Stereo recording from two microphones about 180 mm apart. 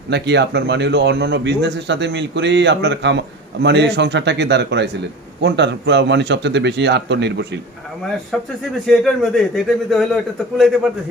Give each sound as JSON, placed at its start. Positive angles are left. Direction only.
{"t": 0.1, "sound": "speech", "side_deg": -70}
{"t": 8.8, "sound": "a man's voice", "side_deg": 0}